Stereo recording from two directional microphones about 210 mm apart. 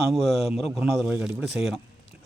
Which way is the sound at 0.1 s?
Centre (ahead or behind).